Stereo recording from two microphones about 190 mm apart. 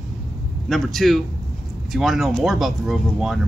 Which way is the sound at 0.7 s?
Centre (ahead or behind).